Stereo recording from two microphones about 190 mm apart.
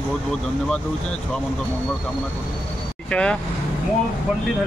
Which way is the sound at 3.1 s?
5° left (ahead or behind).